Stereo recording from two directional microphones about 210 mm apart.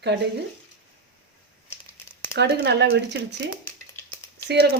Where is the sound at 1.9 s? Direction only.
50° right (ahead or behind).